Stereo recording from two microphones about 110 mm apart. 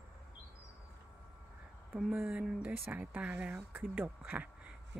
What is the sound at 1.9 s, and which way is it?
Speech, 10° right (ahead or behind).